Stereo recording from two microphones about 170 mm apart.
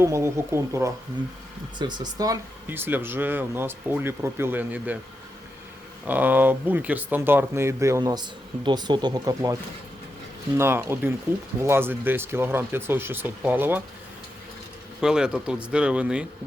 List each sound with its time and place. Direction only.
0.0 s speech: 15° right (ahead or behind)
6.1 s speech: 10° right (ahead or behind)
10.6 s speech: 15° right (ahead or behind)
15.0 s speech: 5° right (ahead or behind)